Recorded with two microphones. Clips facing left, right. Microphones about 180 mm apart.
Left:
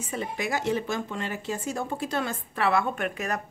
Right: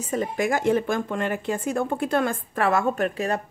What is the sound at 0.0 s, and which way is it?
Speech, 45° right (ahead or behind).